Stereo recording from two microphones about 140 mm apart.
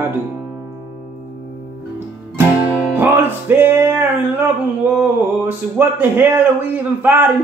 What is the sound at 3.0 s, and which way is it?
Music, 15° right (ahead or behind).